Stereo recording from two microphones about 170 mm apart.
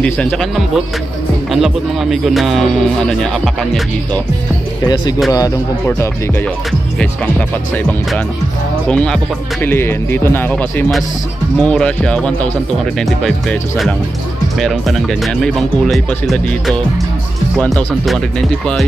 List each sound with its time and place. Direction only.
0.0 s speech: 5° left (ahead or behind)
5.3 s speech: 20° left (ahead or behind)
7.0 s speech: 5° left (ahead or behind)